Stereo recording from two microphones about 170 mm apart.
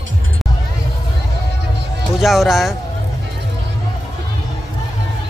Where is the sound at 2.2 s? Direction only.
Centre (ahead or behind).